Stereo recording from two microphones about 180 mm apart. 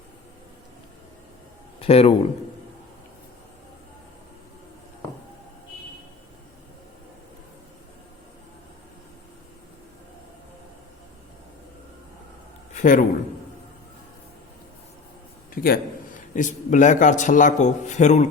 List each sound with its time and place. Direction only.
1.8 s speech: 35° left (ahead or behind)
12.7 s a man's voice: 45° left (ahead or behind)
15.6 s a man's voice: 50° left (ahead or behind)